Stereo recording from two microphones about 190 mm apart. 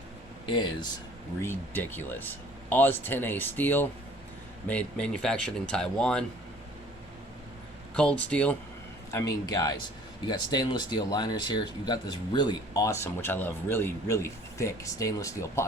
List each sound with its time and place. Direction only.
0.4 s speech: 25° left (ahead or behind)
1.4 s speech: 10° left (ahead or behind)
7.9 s speech: 5° left (ahead or behind)
9.1 s speech: 20° left (ahead or behind)